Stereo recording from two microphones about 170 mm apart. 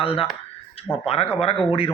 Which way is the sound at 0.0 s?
35° left (ahead or behind).